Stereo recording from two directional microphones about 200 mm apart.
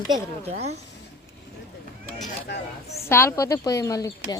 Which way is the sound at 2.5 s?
55° left (ahead or behind).